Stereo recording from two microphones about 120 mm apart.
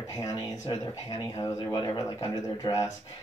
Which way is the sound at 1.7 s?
40° left (ahead or behind).